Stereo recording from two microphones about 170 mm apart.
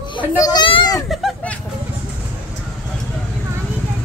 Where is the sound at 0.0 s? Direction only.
30° left (ahead or behind).